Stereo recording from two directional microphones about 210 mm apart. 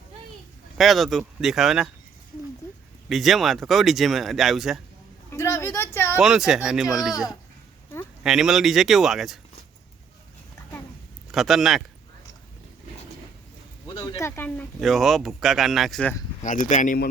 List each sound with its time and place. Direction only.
0.8 s speech: centre (ahead or behind)
3.1 s speech: centre (ahead or behind)
5.3 s speech: 10° left (ahead or behind)
6.1 s speech: 5° right (ahead or behind)
8.2 s speech: centre (ahead or behind)
11.3 s speech: centre (ahead or behind)
13.8 s speech: 20° left (ahead or behind); by 16.1 s 5° left (ahead or behind)
16.4 s speech: 35° left (ahead or behind)